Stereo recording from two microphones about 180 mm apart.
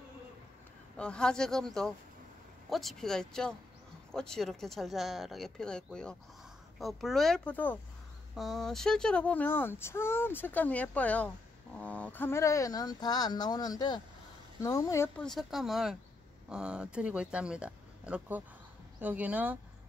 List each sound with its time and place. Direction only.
0.9 s speech: 5° left (ahead or behind)
15.2 s speech: centre (ahead or behind)